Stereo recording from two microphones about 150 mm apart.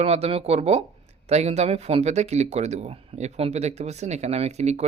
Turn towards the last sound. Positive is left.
turn(degrees=-45)  # may be behind; listen again after turning